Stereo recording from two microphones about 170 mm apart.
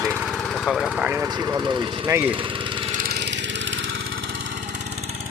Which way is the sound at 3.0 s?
70° right (ahead or behind).